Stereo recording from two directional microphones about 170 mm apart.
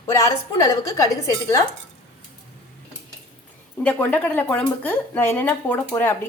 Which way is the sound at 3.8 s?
10° left (ahead or behind).